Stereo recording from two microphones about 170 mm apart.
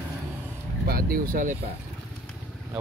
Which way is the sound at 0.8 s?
60° right (ahead or behind).